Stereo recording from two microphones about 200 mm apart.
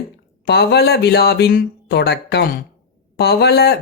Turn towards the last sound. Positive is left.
turn(degrees=55)  # may be behind; listen again after turning